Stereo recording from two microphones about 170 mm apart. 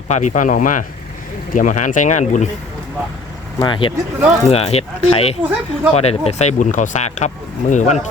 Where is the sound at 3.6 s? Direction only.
30° left (ahead or behind).